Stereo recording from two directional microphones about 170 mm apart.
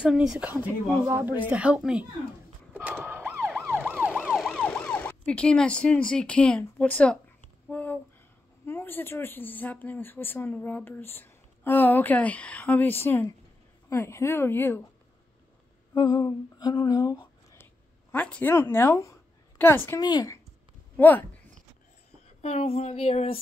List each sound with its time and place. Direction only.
0.0 s speech: 5° right (ahead or behind)
2.7 s siren: 10° right (ahead or behind)
3.8 s emergency vehicle: 10° right (ahead or behind)
4.3 s ambulance: centre (ahead or behind)
7.7 s a sound: 10° left (ahead or behind)
8.6 s a woman's voice: 15° left (ahead or behind)
15.9 s a sound: 25° left (ahead or behind)
18.1 s a woman's voice: 10° left (ahead or behind)
20.0 s speech: 25° left (ahead or behind)
20.9 s speech: 10° left (ahead or behind)
22.4 s speech: 40° left (ahead or behind)